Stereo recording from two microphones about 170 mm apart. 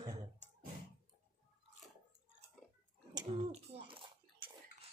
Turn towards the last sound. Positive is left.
turn(degrees=-35)  # may be behind; listen again after turning